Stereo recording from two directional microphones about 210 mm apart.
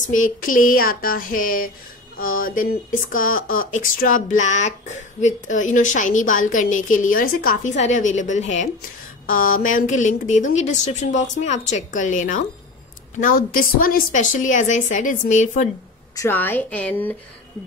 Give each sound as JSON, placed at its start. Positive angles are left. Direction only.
{"t": 0.0, "sound": "speech", "side_deg": 40}
{"t": 16.2, "sound": "a woman's voice", "side_deg": 10}